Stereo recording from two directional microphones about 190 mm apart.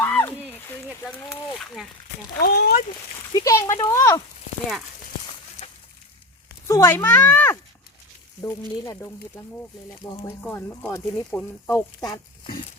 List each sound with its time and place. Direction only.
0.0 s a sound: 10° left (ahead or behind)
1.5 s speech: centre (ahead or behind)
2.4 s speech: 55° left (ahead or behind)
3.3 s speech: 15° left (ahead or behind)
5.6 s a sound: 30° left (ahead or behind)
6.7 s speech: 15° left (ahead or behind)
10.4 s speech: 10° left (ahead or behind)